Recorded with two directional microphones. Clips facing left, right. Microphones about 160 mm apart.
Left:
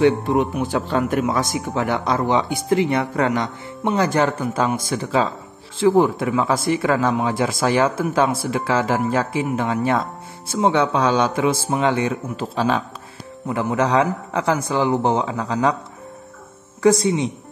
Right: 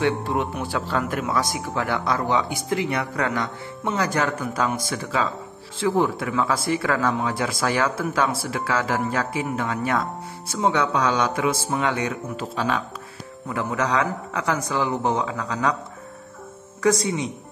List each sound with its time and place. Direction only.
0.0 s speech: 20° left (ahead or behind)
16.8 s speech: 30° left (ahead or behind)